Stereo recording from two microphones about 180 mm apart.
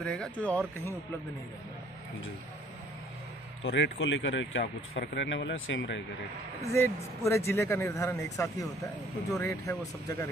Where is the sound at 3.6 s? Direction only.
90° left.